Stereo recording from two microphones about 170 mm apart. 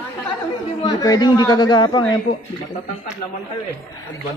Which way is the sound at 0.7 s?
20° left (ahead or behind).